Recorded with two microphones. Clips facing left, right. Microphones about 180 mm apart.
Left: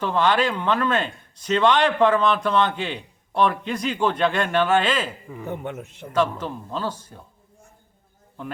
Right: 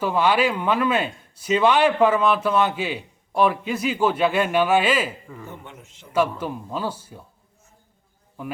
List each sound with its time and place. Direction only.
0.0 s speech: 10° right (ahead or behind)
5.5 s speech: 60° left (ahead or behind)
6.4 s speech: 10° right (ahead or behind)